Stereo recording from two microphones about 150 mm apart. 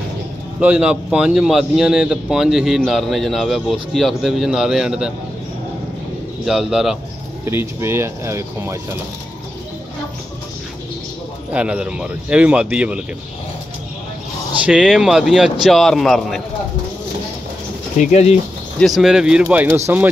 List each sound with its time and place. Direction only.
0.6 s a man's voice: 10° right (ahead or behind)
6.4 s a man's voice: 5° right (ahead or behind)
7.4 s speech: 15° right (ahead or behind)
11.5 s speech: 5° right (ahead or behind)
14.6 s a man's voice: 5° right (ahead or behind)
17.9 s speech: 45° left (ahead or behind)
18.8 s a man's voice: centre (ahead or behind)